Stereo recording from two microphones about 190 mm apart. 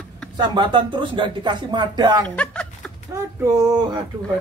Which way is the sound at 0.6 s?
25° right (ahead or behind).